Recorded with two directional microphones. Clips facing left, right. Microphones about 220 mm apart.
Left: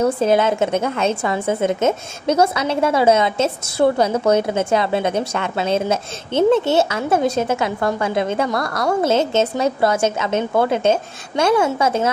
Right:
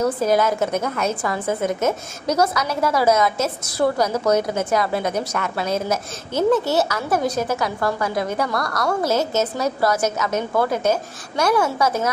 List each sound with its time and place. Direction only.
0.0 s a woman's voice: 25° left (ahead or behind)